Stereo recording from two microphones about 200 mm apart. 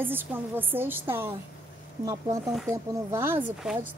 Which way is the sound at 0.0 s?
10° right (ahead or behind).